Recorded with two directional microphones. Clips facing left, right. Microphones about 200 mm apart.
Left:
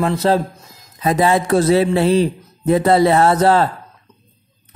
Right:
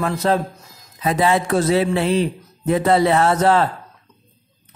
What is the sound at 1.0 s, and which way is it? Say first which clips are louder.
Speech: left 2 dB; 40° left (ahead or behind).